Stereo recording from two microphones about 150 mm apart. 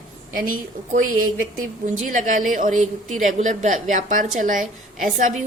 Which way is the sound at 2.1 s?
60° right (ahead or behind).